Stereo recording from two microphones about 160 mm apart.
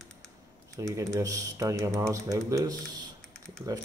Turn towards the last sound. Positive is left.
turn(degrees=-20)  # may be behind; listen again after turning